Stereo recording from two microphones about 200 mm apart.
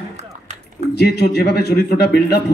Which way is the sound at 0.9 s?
55° left (ahead or behind).